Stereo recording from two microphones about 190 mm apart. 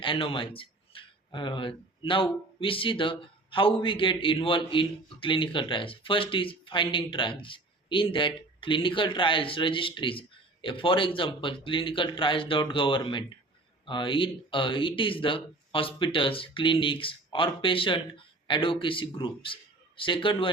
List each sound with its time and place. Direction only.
0.0 s speech: 30° left (ahead or behind)